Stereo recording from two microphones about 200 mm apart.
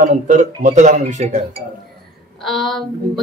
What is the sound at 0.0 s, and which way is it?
Speech, 40° right (ahead or behind).